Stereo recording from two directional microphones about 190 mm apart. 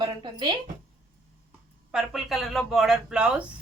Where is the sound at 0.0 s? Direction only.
25° right (ahead or behind).